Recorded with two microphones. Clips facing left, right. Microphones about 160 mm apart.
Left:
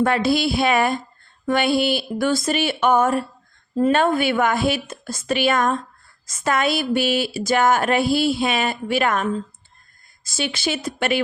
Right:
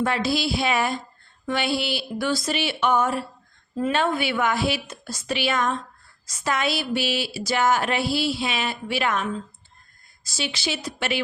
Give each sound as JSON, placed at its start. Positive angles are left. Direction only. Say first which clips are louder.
{"t": 0.0, "sound": "speech", "louder": "left 5 dB", "side_deg": 55}